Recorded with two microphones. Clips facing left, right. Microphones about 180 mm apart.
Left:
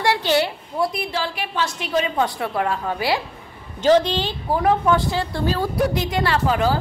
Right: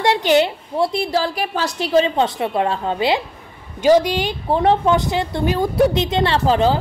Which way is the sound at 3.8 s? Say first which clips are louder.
Right 2 dB; 10° right (ahead or behind).